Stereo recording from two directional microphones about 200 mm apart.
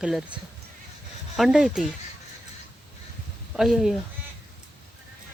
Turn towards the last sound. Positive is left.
turn(degrees=0)  # may be behind; listen again after turning